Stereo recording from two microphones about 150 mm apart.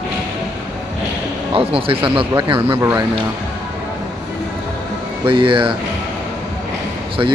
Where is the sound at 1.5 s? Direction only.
40° right (ahead or behind).